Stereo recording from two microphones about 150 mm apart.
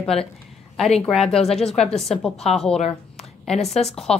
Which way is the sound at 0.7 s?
Centre (ahead or behind).